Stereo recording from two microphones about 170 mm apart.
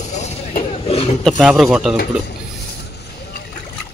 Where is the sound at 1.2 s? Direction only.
Centre (ahead or behind).